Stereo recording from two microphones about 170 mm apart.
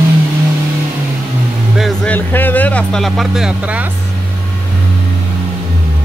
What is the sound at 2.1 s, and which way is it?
Speech, 10° left (ahead or behind).